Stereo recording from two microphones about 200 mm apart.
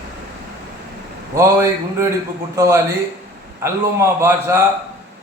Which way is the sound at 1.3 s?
15° right (ahead or behind).